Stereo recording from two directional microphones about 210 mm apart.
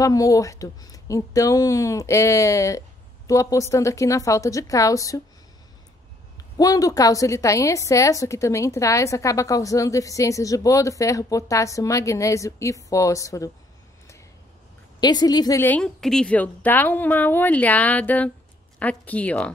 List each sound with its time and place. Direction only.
0.0 s a woman's voice: 15° left (ahead or behind)
6.6 s a woman's voice: 15° left (ahead or behind)
15.0 s a woman's voice: 20° left (ahead or behind)